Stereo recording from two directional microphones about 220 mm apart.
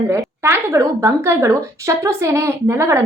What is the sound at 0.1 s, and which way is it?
A woman's voice, 10° right (ahead or behind).